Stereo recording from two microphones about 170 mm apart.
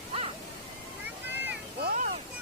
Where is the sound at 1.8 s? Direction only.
60° right (ahead or behind).